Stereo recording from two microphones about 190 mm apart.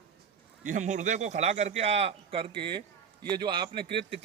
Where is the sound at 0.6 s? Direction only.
40° right (ahead or behind).